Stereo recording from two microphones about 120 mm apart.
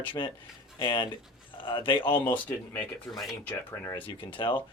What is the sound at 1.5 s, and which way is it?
Speech, 45° left (ahead or behind).